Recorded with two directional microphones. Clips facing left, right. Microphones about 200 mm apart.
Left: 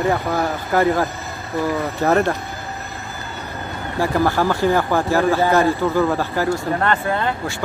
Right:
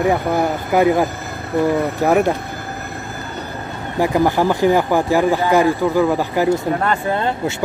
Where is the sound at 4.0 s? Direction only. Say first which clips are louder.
Right 3 dB; 15° right (ahead or behind).